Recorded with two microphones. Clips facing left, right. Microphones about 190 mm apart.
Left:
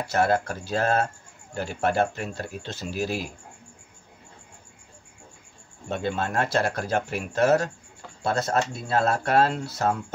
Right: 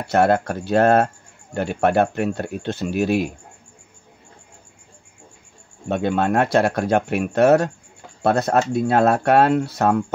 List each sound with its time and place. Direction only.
0.1 s speech: 60° right (ahead or behind)
5.9 s speech: 65° right (ahead or behind)